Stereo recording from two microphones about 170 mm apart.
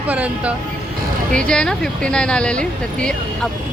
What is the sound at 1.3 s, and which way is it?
Speech, 5° left (ahead or behind).